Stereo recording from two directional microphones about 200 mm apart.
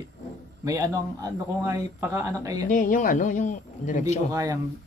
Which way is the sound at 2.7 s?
40° left (ahead or behind).